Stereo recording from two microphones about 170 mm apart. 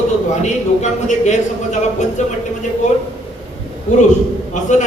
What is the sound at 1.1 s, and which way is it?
Speech, 45° left (ahead or behind).